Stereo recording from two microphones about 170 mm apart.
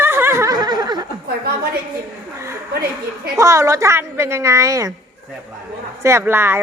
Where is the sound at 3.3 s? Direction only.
20° right (ahead or behind).